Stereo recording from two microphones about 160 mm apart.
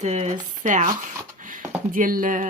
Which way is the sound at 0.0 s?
45° right (ahead or behind).